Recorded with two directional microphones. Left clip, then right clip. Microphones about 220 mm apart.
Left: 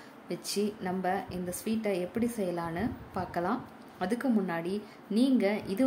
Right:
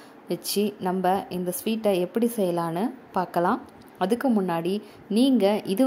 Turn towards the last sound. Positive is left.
turn(degrees=-30)  # may be behind; listen again after turning